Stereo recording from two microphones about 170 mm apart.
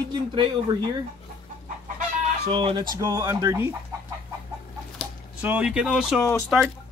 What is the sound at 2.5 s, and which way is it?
Speech, 30° right (ahead or behind).